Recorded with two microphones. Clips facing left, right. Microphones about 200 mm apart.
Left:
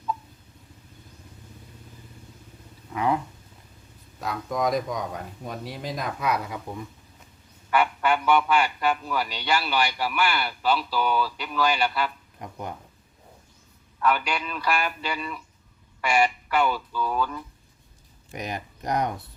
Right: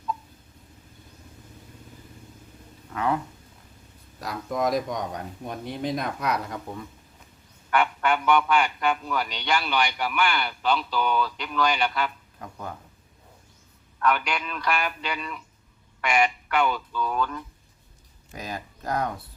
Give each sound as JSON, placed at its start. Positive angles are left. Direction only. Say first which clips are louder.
{"t": 2.9, "sound": "speech", "louder": "left 1 dB", "side_deg": 15}
{"t": 4.2, "sound": "speech", "louder": "even", "side_deg": 0}
{"t": 7.7, "sound": "speech", "louder": "left 1 dB", "side_deg": 5}
{"t": 12.4, "sound": "speech", "louder": "left 2 dB", "side_deg": 20}
{"t": 14.0, "sound": "speech", "louder": "even", "side_deg": 5}
{"t": 18.3, "sound": "speech", "louder": "left 2 dB", "side_deg": 20}